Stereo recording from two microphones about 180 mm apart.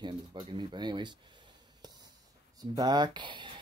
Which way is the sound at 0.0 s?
25° right (ahead or behind).